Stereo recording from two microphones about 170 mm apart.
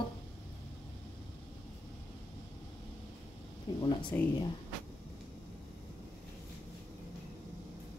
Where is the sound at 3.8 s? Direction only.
30° left (ahead or behind).